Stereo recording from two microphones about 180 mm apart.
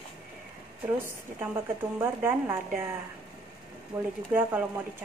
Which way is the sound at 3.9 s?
15° right (ahead or behind).